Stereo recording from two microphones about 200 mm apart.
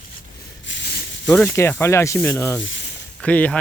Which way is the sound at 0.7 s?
60° left (ahead or behind).